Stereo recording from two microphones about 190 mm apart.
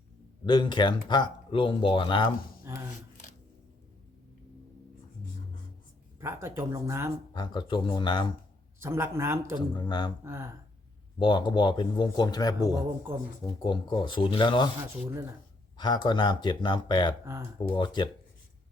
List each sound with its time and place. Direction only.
0.4 s speech: 25° left (ahead or behind)
6.1 s speech: 10° right (ahead or behind)
7.3 s speech: 20° left (ahead or behind)
8.8 s speech: 15° right (ahead or behind)
9.6 s speech: 25° left (ahead or behind)
10.2 s speech: 15° right (ahead or behind)
11.2 s speech: 25° left (ahead or behind)
13.1 s speech: 10° right (ahead or behind)
13.6 s speech: 25° left (ahead or behind)
15.8 s speech: 25° left (ahead or behind)